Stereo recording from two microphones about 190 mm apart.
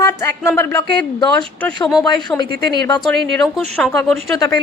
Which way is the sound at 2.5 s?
20° left (ahead or behind).